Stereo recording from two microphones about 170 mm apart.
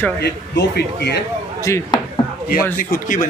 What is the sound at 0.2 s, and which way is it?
A man's voice, 75° left (ahead or behind).